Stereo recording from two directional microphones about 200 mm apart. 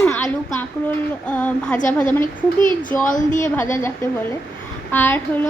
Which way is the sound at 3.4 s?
10° left (ahead or behind).